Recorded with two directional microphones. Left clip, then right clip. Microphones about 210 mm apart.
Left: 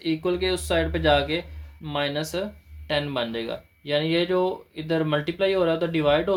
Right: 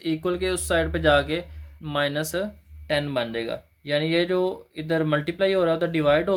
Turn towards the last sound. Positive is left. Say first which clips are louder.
# right 1 dB
turn(degrees=-30)  # may be behind; listen again after turning